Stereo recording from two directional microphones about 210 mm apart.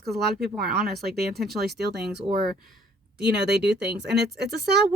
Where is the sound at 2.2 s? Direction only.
25° right (ahead or behind).